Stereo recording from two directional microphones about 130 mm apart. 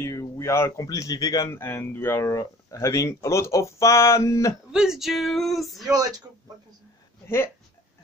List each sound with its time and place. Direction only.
0.0 s speech: 20° left (ahead or behind)
4.7 s male singing: 5° right (ahead or behind)